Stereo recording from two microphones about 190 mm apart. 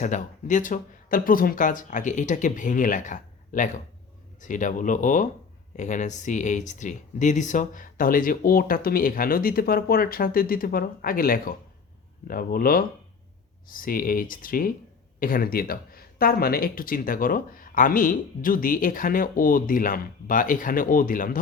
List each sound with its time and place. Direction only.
0.0 s speech: 40° left (ahead or behind)